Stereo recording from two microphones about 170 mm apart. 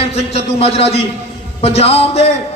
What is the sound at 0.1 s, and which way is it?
A man's voice, 35° left (ahead or behind).